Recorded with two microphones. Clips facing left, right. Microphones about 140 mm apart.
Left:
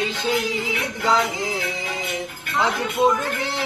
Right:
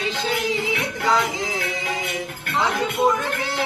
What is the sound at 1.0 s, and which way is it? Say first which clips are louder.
Speech: left 1 dB; 20° left (ahead or behind).